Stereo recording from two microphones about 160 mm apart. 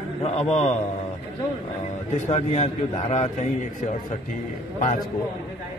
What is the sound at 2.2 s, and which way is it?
A man's voice, 45° left (ahead or behind).